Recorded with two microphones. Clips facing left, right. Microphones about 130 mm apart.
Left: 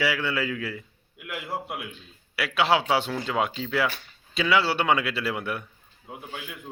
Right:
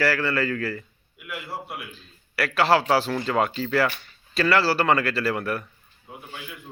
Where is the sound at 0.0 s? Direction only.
Centre (ahead or behind).